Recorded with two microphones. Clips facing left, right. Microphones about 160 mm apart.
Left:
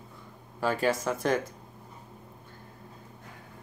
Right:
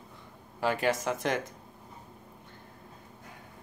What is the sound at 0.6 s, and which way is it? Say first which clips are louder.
Speech: left 1 dB; 20° right (ahead or behind).